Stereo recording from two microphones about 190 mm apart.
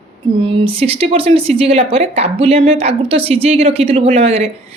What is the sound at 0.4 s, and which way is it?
A woman's voice, 30° right (ahead or behind).